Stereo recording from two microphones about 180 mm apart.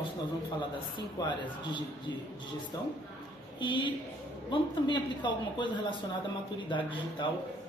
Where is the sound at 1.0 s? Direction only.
25° left (ahead or behind).